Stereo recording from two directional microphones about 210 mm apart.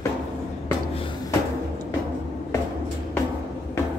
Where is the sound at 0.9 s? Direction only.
25° left (ahead or behind).